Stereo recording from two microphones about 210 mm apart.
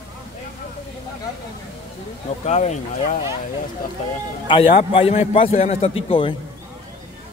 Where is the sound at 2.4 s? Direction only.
35° left (ahead or behind).